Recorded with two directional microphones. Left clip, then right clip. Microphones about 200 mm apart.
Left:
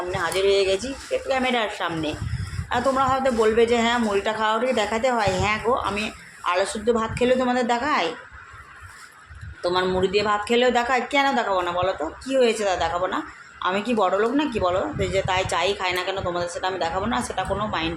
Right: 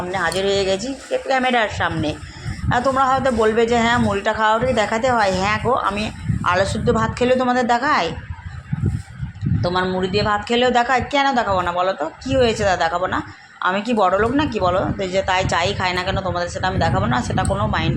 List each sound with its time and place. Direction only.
0.1 s speech: 10° right (ahead or behind)
9.6 s speech: centre (ahead or behind)